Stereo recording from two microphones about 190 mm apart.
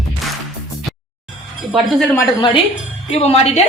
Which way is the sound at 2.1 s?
25° left (ahead or behind).